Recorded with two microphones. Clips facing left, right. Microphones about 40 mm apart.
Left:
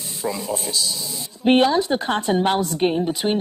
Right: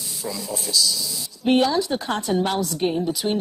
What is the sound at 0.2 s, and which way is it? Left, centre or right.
A woman's voice, left.